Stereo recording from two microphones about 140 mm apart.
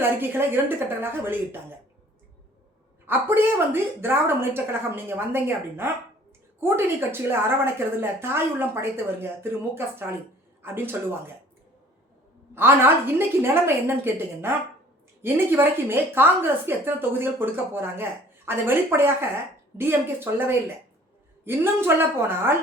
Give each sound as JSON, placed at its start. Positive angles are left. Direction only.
{"t": 0.0, "sound": "a woman's voice", "side_deg": -15}
{"t": 3.1, "sound": "a woman's voice", "side_deg": -15}
{"t": 12.5, "sound": "a woman's voice", "side_deg": -15}